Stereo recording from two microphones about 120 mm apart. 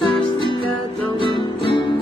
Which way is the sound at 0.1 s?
45° left (ahead or behind).